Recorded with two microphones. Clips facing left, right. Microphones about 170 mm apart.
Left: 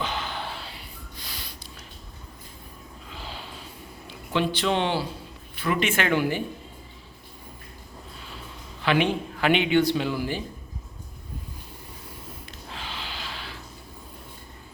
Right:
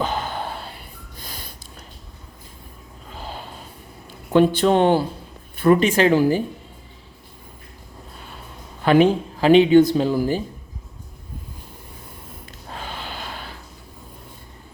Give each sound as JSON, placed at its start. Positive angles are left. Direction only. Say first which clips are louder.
{"t": 0.0, "sound": "gasp", "louder": "right 6 dB", "side_deg": -45}
{"t": 3.1, "sound": "snort", "louder": "right 5 dB", "side_deg": -45}
{"t": 4.3, "sound": "a man's voice", "louder": "right 9 dB", "side_deg": -45}
{"t": 8.8, "sound": "a man's voice", "louder": "right 8 dB", "side_deg": -40}
{"t": 12.6, "sound": "snort", "louder": "right 5 dB", "side_deg": -45}